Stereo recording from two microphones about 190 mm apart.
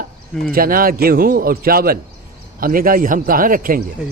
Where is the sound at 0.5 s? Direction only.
50° right (ahead or behind).